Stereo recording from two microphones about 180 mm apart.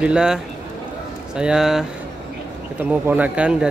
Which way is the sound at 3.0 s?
10° right (ahead or behind).